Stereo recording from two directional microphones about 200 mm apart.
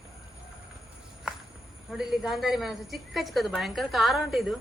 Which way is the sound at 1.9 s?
Centre (ahead or behind).